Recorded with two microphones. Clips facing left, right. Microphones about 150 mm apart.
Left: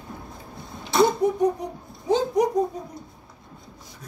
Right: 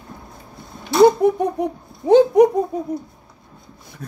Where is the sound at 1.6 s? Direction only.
60° right (ahead or behind).